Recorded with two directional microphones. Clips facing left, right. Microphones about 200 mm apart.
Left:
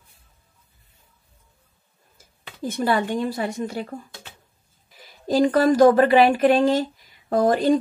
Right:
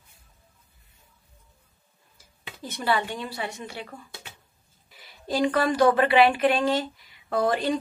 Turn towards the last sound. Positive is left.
turn(degrees=40)  # may be behind; listen again after turning